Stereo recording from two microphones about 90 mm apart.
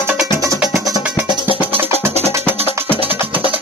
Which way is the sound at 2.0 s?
25° right (ahead or behind).